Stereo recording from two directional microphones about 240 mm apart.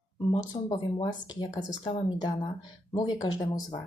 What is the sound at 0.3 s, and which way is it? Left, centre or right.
Speech, centre.